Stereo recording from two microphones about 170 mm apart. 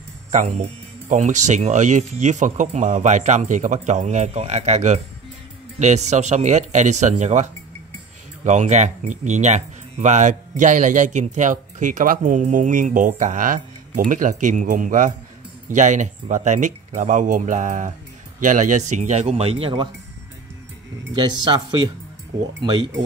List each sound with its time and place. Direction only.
0.3 s speech: 45° right (ahead or behind)
8.5 s speech: 45° right (ahead or behind)
21.1 s speech: 25° right (ahead or behind)